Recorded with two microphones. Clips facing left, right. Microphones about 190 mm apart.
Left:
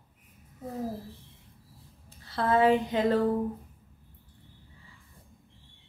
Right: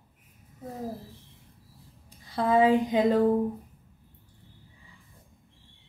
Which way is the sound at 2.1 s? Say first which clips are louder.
Right 2 dB; 15° right (ahead or behind).